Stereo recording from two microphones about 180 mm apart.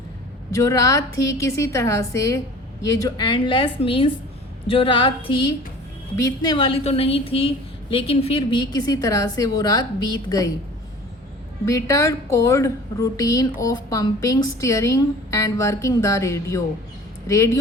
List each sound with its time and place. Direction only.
0.5 s a woman's voice: 20° left (ahead or behind)
11.6 s a woman's voice: 15° left (ahead or behind)